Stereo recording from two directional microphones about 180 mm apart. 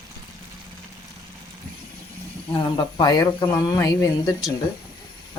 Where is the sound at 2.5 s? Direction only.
25° left (ahead or behind).